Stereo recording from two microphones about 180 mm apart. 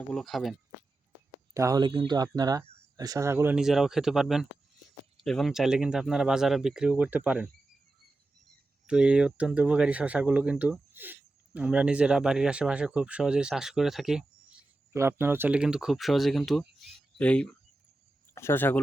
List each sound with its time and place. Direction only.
0.1 s speech: 5° left (ahead or behind)
1.5 s speech: 20° right (ahead or behind)
8.9 s speech: 5° right (ahead or behind)
14.9 s speech: 15° right (ahead or behind)
16.8 s a sound: 5° left (ahead or behind)
18.3 s speech: 15° left (ahead or behind)